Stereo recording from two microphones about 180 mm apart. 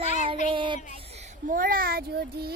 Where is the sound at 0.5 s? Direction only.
25° right (ahead or behind).